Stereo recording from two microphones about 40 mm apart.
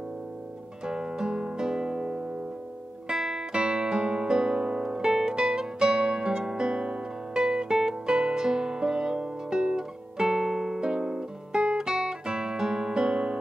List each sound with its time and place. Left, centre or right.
0.8 s music: centre
3.1 s guitar: centre